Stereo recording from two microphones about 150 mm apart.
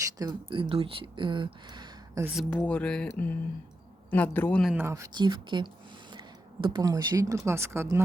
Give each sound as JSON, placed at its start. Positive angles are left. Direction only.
{"t": 0.2, "sound": "speech", "side_deg": -30}
{"t": 2.3, "sound": "speech", "side_deg": 0}
{"t": 4.8, "sound": "speech", "side_deg": -20}